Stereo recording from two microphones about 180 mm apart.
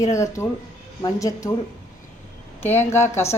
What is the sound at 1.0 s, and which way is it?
Speech, 20° left (ahead or behind).